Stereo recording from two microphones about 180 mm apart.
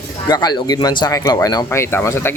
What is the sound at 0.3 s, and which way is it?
Speech, 20° left (ahead or behind).